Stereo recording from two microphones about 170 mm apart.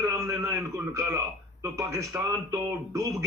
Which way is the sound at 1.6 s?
15° right (ahead or behind).